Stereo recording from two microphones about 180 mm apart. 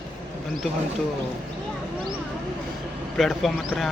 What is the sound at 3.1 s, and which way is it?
Speech, centre (ahead or behind).